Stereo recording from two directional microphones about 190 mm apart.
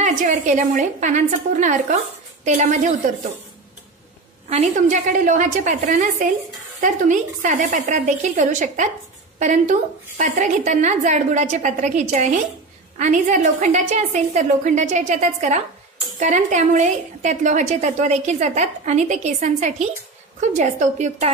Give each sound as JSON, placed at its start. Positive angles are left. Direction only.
{"t": 0.0, "sound": "a woman's voice", "side_deg": -40}
{"t": 4.5, "sound": "a woman's voice", "side_deg": -35}
{"t": 10.1, "sound": "a woman's voice", "side_deg": -40}